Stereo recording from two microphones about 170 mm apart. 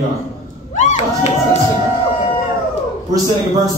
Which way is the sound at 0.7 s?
45° left (ahead or behind).